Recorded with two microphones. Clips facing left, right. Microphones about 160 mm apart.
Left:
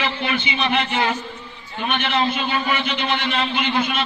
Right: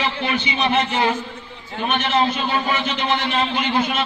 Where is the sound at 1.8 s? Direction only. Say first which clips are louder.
Right 2 dB; 40° right (ahead or behind).